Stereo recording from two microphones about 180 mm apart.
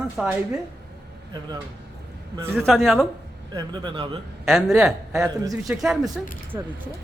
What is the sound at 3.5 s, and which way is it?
Speech, 25° right (ahead or behind).